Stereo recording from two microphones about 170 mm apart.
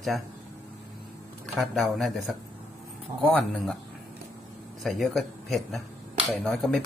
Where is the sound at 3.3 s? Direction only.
Centre (ahead or behind).